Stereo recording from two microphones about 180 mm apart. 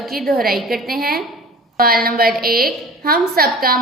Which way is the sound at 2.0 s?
55° right (ahead or behind).